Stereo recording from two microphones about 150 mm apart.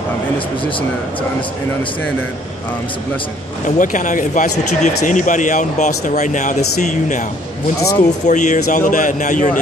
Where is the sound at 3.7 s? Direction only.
55° left (ahead or behind).